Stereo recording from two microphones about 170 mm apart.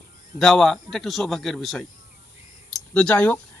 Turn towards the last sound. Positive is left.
turn(degrees=10)  # may be behind; listen again after turning